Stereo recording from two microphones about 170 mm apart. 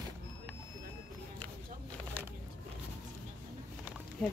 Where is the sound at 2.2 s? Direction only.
10° left (ahead or behind).